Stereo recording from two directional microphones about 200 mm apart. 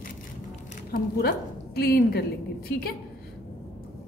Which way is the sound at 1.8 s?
50° left (ahead or behind).